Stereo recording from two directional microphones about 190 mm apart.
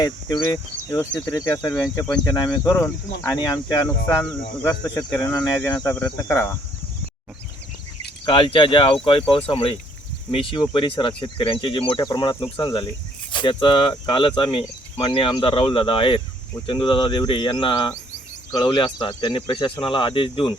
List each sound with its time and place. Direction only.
0.0 s speech: 20° left (ahead or behind)
4.2 s speech: centre (ahead or behind)
8.2 s speech: 25° left (ahead or behind)